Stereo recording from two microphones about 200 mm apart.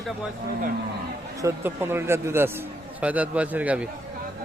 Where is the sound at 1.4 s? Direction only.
10° right (ahead or behind).